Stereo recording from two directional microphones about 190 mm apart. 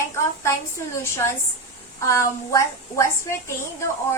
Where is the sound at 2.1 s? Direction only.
15° left (ahead or behind).